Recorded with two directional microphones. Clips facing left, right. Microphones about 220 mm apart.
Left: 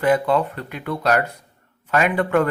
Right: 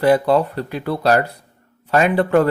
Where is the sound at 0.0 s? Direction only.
35° right (ahead or behind).